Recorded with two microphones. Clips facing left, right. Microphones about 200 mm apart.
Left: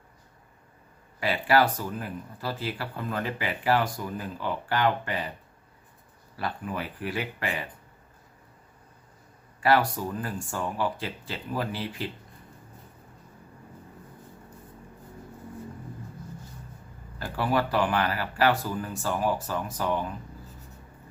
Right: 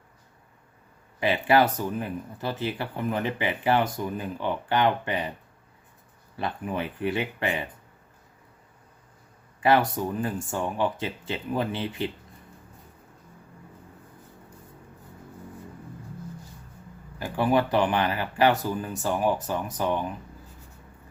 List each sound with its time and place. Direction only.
1.2 s speech: 20° right (ahead or behind)
6.3 s speech: 25° right (ahead or behind)
9.6 s speech: 20° right (ahead or behind)
17.2 s speech: 20° right (ahead or behind)